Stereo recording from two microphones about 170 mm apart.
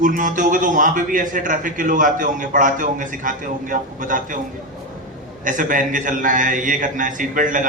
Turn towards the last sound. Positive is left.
turn(degrees=-50)  # may be behind; listen again after turning